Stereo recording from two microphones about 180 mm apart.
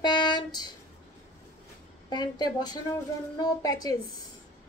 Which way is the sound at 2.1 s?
25° left (ahead or behind).